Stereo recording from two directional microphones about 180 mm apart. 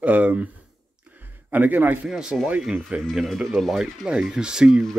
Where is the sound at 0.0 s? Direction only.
10° right (ahead or behind).